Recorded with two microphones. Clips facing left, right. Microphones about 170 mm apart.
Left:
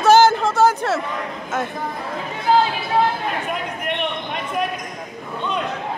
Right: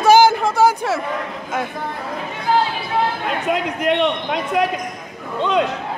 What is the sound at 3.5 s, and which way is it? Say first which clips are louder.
Speech: right 7 dB; 90° right.